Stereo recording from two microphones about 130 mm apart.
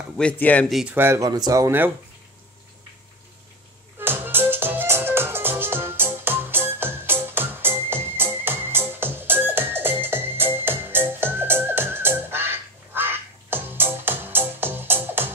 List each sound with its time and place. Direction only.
0.2 s speech: 10° left (ahead or behind)
0.7 s speech: centre (ahead or behind)
0.9 s speech: 20° right (ahead or behind)
4.0 s music: 15° right (ahead or behind)